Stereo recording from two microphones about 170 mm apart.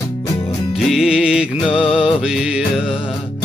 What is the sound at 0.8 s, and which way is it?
Music, centre (ahead or behind).